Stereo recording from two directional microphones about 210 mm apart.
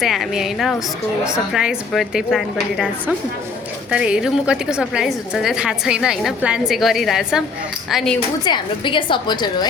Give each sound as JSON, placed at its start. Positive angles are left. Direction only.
{"t": 0.0, "sound": "a woman's voice", "side_deg": 0}
{"t": 8.4, "sound": "a woman's voice", "side_deg": 20}